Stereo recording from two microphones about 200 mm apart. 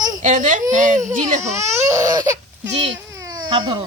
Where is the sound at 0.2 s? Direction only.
40° right (ahead or behind).